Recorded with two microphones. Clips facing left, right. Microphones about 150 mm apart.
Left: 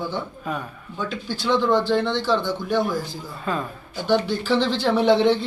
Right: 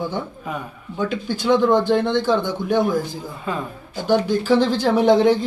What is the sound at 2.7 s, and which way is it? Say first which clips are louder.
Speech: right 5 dB; 20° right (ahead or behind).